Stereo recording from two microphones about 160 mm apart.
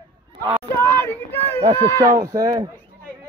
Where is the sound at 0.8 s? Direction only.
15° left (ahead or behind).